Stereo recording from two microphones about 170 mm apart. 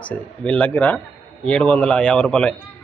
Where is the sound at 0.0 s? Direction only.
10° left (ahead or behind).